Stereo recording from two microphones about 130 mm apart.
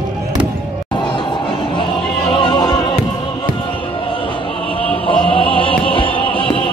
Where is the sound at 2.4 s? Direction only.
30° left (ahead or behind).